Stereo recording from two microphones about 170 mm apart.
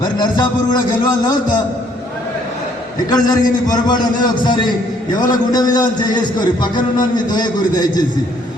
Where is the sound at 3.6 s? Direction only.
25° left (ahead or behind).